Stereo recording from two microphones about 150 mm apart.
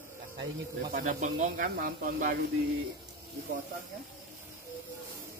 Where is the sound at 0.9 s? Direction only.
60° right (ahead or behind).